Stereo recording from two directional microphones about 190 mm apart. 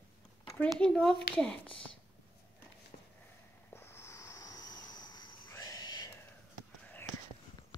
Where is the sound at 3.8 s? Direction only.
15° left (ahead or behind).